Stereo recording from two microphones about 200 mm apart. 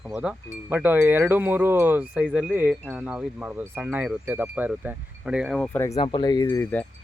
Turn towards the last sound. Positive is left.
turn(degrees=15)  # may be behind; listen again after turning